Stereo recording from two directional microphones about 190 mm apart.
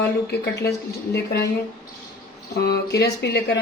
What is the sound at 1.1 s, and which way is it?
Speech, 55° left (ahead or behind).